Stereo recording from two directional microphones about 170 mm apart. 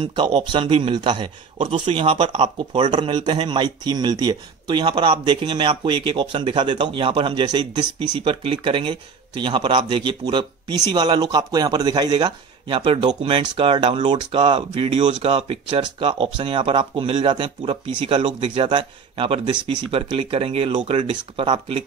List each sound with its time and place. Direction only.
0.0 s a man's voice: 25° right (ahead or behind)